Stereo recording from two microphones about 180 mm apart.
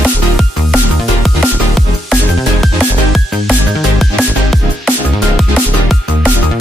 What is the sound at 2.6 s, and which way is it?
Music, centre (ahead or behind).